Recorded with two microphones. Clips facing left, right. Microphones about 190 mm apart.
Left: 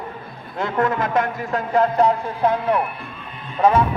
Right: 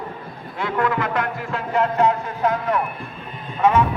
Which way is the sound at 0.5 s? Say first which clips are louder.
Left 1 dB; 45° left (ahead or behind).